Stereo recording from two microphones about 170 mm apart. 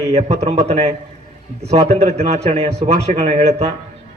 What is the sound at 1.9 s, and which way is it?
A man's voice, 35° right (ahead or behind).